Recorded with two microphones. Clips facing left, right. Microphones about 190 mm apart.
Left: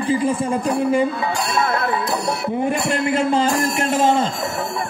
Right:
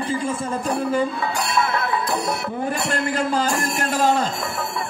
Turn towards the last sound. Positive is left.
turn(degrees=25)  # may be behind; listen again after turning